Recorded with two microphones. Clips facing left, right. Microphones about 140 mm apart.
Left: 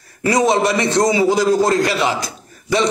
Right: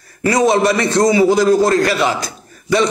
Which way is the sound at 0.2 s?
20° left (ahead or behind).